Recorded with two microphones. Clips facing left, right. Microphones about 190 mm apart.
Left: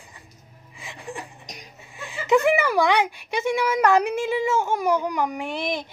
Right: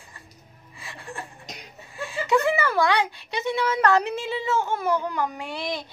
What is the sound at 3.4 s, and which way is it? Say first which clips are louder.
Speech: left 2 dB; 10° left (ahead or behind).